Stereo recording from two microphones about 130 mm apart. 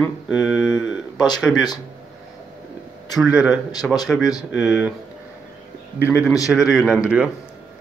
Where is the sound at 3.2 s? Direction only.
5° right (ahead or behind).